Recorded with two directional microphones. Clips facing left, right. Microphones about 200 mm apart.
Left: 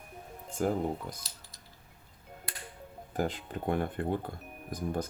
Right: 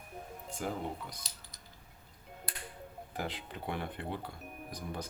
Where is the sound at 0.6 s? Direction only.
45° left (ahead or behind).